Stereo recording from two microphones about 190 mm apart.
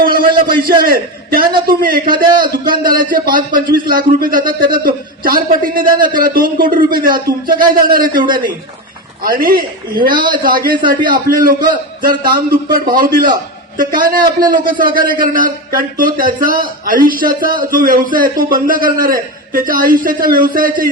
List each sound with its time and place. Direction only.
0.0 s a sound: 50° right (ahead or behind)
0.8 s a man's voice: 50° right (ahead or behind)
5.8 s speech: 25° right (ahead or behind)
6.1 s a man's voice: 50° right (ahead or behind)